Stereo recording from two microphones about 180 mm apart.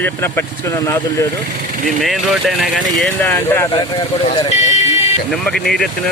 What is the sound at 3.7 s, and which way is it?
Speech, 30° left (ahead or behind).